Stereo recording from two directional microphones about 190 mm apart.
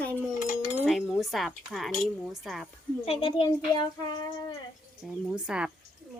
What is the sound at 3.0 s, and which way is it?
Speech, 30° left (ahead or behind).